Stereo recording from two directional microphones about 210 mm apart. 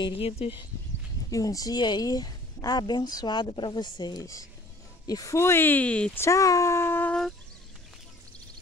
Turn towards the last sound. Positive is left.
turn(degrees=5)  # may be behind; listen again after turning